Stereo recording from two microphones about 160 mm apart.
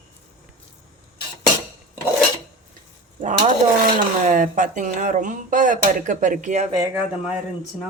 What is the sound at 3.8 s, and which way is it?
Speech, 55° right (ahead or behind).